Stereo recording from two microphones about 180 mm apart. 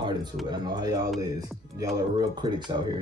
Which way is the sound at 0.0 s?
25° right (ahead or behind).